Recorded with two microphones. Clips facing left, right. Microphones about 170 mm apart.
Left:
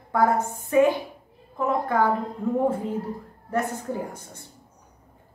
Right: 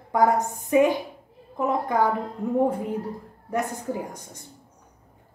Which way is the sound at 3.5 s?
15° right (ahead or behind).